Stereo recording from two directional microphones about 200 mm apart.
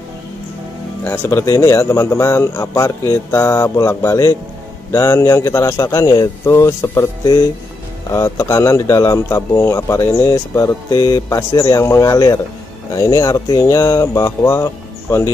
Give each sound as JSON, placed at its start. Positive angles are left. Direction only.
{"t": 1.0, "sound": "a man's voice", "side_deg": 15}
{"t": 8.1, "sound": "a man's voice", "side_deg": 15}